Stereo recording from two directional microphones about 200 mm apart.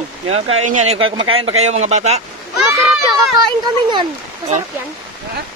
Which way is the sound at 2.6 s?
Centre (ahead or behind).